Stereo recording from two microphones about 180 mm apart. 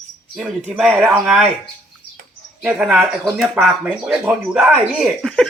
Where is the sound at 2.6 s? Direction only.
10° right (ahead or behind).